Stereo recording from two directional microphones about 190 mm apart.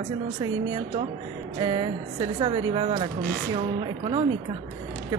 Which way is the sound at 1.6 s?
25° right (ahead or behind).